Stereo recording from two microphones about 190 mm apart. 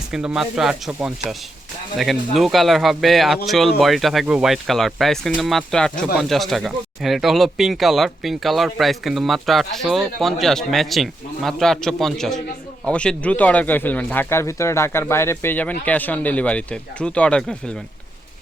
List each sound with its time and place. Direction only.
0.1 s speech: 5° right (ahead or behind)